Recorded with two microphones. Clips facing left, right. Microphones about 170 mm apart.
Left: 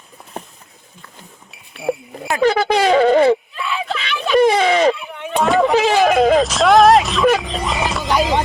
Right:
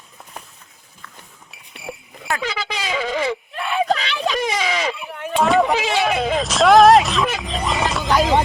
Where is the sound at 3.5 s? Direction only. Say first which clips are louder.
Right 3 dB; 55° right (ahead or behind).